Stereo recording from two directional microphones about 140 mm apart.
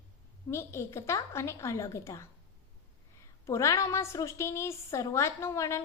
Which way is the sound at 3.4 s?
20° left (ahead or behind).